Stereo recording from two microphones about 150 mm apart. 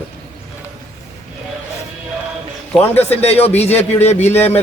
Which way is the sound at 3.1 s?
45° left (ahead or behind).